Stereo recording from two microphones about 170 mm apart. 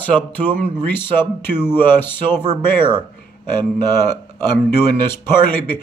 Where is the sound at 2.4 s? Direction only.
25° right (ahead or behind).